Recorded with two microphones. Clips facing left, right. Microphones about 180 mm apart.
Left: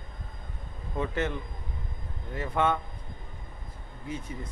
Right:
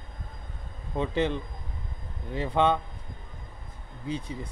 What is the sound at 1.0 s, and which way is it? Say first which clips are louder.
Speech: right 3 dB; 20° right (ahead or behind).